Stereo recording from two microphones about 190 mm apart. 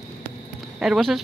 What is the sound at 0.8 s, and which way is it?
Speech, centre (ahead or behind).